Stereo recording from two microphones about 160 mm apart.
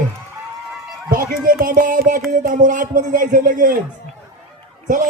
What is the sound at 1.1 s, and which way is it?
Speech, 60° right (ahead or behind).